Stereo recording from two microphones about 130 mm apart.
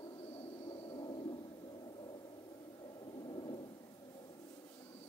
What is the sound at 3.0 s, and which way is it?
Thunder, 35° left (ahead or behind).